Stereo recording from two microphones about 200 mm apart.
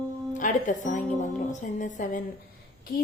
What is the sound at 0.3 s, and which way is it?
A woman's voice, 40° left (ahead or behind).